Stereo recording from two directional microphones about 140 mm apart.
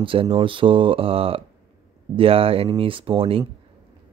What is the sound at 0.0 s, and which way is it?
Speech, 40° right (ahead or behind).